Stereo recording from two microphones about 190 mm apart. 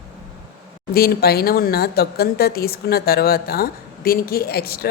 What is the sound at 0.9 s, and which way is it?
Speech, 55° left (ahead or behind).